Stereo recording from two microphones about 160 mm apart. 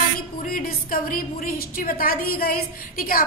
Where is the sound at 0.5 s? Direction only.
60° left (ahead or behind).